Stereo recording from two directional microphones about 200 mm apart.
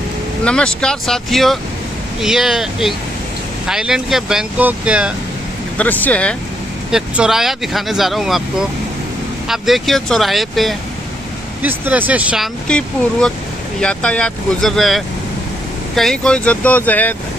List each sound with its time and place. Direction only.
0.5 s speech: 5° left (ahead or behind)
5.8 s speech: 5° left (ahead or behind)
12.6 s speech: 5° left (ahead or behind)